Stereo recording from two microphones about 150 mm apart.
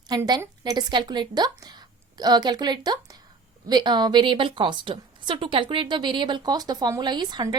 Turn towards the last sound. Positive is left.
turn(degrees=-30)  # may be behind; listen again after turning